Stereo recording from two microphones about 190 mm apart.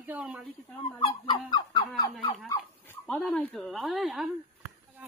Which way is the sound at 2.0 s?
15° left (ahead or behind).